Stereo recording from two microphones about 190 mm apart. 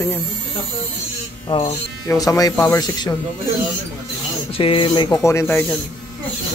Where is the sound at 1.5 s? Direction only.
20° left (ahead or behind).